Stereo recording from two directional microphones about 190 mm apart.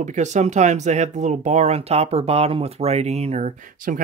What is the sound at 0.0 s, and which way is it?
Speech, 40° right (ahead or behind).